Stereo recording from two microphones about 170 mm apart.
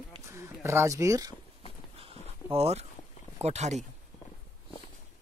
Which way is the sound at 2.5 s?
35° right (ahead or behind).